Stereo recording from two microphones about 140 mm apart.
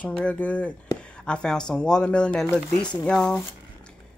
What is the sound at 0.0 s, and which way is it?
Speech, 10° left (ahead or behind).